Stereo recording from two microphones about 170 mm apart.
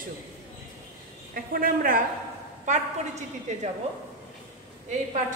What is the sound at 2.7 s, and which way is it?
Speech, 45° right (ahead or behind).